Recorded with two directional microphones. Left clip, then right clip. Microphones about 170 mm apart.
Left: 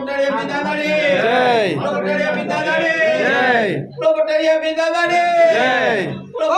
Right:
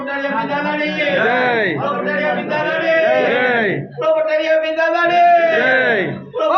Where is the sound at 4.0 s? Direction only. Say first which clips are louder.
Left 1 dB; 25° left (ahead or behind).